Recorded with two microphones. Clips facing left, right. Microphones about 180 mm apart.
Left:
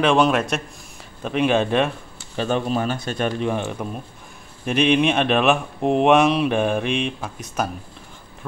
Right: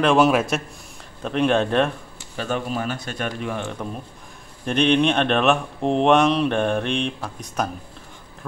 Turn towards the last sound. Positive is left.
turn(degrees=5)  # may be behind; listen again after turning